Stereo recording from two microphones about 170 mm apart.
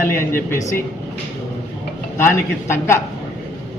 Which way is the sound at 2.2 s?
15° left (ahead or behind).